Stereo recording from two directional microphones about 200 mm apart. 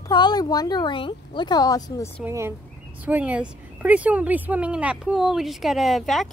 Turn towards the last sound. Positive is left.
turn(degrees=0)  # may be behind; listen again after turning